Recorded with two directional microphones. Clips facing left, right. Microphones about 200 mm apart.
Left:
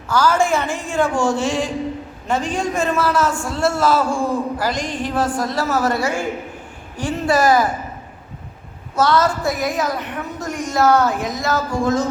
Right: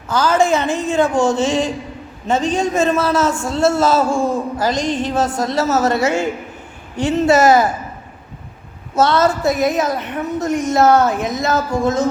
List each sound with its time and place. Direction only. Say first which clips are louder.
0.1 s a man's voice: right 2 dB; 20° right (ahead or behind)
9.0 s a man's voice: right 2 dB; 25° right (ahead or behind)